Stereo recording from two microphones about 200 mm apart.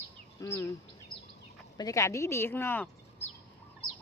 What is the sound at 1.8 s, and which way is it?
Speech, 15° left (ahead or behind).